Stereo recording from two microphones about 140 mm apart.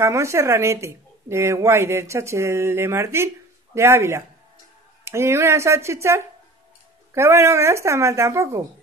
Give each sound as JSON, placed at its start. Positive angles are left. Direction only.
{"t": 0.0, "sound": "speech", "side_deg": -20}